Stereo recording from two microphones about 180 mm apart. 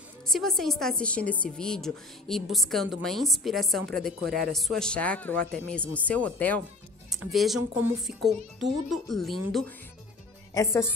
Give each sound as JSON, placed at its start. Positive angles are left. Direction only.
{"t": 0.3, "sound": "a woman's voice", "side_deg": 0}
{"t": 10.5, "sound": "a woman's voice", "side_deg": 15}